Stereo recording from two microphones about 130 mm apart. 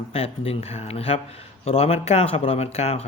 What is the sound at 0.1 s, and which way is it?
Speech, 50° left (ahead or behind).